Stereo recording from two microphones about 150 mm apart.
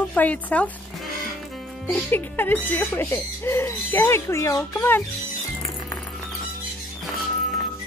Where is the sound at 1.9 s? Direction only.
10° left (ahead or behind).